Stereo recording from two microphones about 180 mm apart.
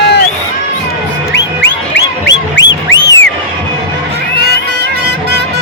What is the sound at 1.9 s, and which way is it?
Music, 75° left (ahead or behind).